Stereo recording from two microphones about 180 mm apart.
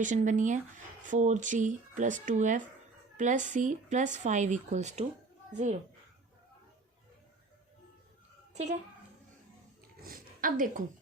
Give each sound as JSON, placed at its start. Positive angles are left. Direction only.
{"t": 0.0, "sound": "speech", "side_deg": -45}
{"t": 8.5, "sound": "a woman's voice", "side_deg": -40}
{"t": 10.0, "sound": "a sound", "side_deg": -50}